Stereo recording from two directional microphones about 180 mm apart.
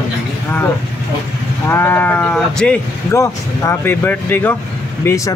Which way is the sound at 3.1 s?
15° left (ahead or behind).